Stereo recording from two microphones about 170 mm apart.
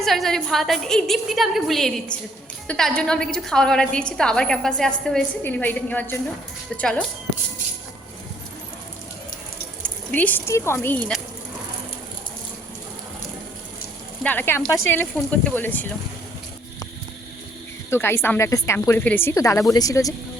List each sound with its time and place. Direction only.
0.0 s a woman's voice: centre (ahead or behind)
9.8 s speech: 10° left (ahead or behind)
14.3 s speech: 10° left (ahead or behind)
17.9 s speech: 15° left (ahead or behind)